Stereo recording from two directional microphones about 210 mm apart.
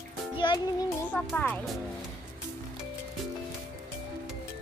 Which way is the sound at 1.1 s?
5° left (ahead or behind).